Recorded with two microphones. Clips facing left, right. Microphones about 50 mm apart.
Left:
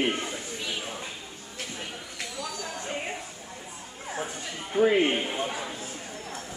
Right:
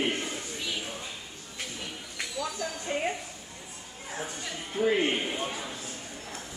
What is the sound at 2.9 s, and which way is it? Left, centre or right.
Speech, centre.